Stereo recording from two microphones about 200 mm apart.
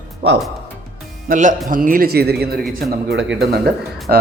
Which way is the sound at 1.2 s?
40° right (ahead or behind).